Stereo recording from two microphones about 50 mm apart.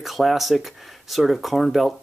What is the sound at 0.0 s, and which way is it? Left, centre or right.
Speech, centre.